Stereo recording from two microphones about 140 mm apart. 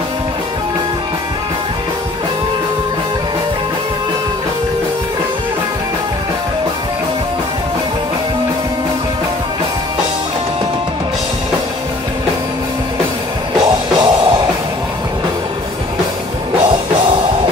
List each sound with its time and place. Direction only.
13.9 s music: 30° right (ahead or behind)